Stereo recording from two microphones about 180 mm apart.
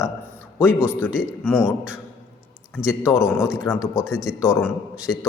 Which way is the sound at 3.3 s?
15° left (ahead or behind).